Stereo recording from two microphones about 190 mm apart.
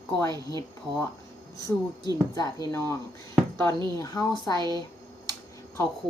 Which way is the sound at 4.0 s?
20° left (ahead or behind).